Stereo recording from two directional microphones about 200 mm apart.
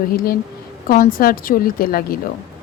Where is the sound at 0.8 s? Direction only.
45° left (ahead or behind).